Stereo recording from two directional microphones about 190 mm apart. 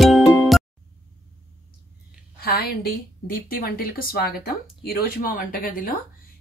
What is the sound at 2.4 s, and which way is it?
A woman's voice, 55° left (ahead or behind).